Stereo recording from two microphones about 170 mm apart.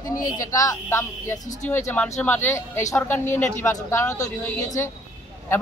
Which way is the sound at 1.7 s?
10° left (ahead or behind).